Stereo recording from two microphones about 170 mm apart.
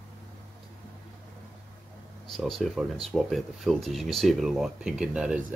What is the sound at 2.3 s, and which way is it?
Speech, centre (ahead or behind).